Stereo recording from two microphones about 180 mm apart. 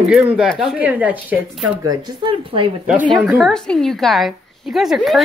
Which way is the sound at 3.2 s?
Centre (ahead or behind).